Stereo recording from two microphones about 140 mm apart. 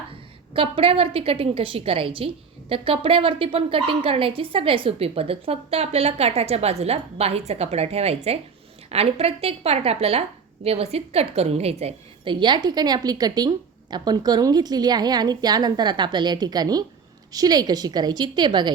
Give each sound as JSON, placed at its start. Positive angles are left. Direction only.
{"t": 0.1, "sound": "a woman's voice", "side_deg": -40}